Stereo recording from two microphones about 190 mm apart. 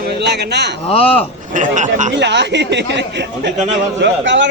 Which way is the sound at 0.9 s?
30° left (ahead or behind).